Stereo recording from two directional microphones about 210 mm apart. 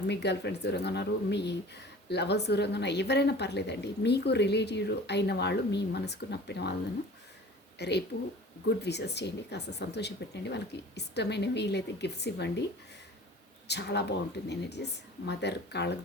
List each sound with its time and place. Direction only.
0.1 s speech: 55° left (ahead or behind)
7.8 s speech: 55° left (ahead or behind)
13.7 s speech: 55° left (ahead or behind)